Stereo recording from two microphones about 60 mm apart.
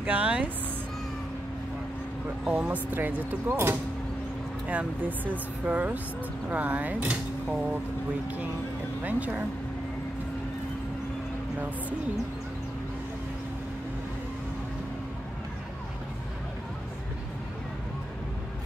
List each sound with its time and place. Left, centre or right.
0.0 s speech: centre
2.4 s speech: right
4.6 s speech: right
9.0 s speech: right